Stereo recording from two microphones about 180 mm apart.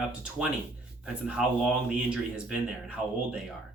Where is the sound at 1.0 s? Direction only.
5° right (ahead or behind).